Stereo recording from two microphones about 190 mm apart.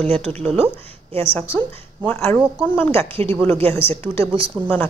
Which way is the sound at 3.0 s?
30° right (ahead or behind).